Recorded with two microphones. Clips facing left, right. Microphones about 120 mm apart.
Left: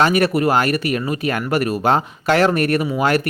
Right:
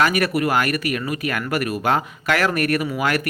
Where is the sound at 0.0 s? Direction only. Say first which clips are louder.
Left 3 dB; 30° left (ahead or behind).